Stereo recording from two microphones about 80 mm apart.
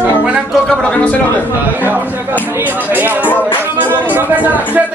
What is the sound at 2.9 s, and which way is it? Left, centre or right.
A man's voice, right.